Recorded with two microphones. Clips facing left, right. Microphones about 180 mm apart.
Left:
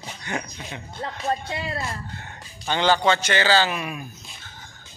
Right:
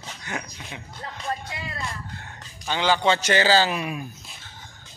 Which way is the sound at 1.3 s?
35° left (ahead or behind).